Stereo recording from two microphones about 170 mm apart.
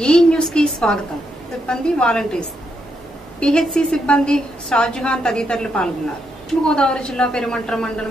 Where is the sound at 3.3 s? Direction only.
5° left (ahead or behind).